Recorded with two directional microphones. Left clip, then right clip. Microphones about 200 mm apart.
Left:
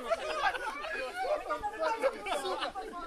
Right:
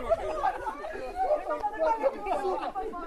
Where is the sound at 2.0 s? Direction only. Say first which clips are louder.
Right 4 dB; 25° left (ahead or behind).